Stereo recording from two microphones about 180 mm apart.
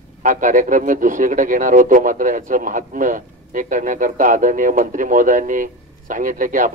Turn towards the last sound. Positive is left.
turn(degrees=-45)  # may be behind; listen again after turning